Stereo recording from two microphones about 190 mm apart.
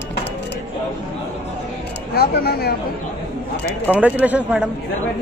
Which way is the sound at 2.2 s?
55° left (ahead or behind).